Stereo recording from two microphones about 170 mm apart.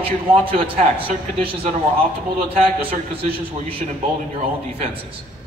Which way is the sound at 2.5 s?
35° right (ahead or behind).